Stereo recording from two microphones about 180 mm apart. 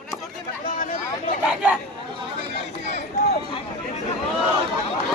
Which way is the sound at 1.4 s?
5° right (ahead or behind).